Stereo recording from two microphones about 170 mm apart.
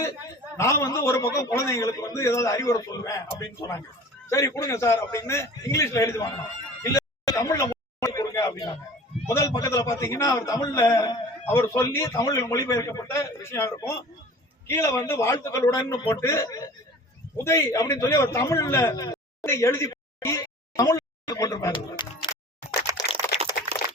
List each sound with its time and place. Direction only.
0.5 s a man's voice: 15° left (ahead or behind)
23.0 s typing: 20° left (ahead or behind)